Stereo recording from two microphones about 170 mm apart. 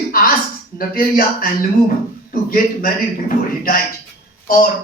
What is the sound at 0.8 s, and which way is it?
Speech, 55° left (ahead or behind).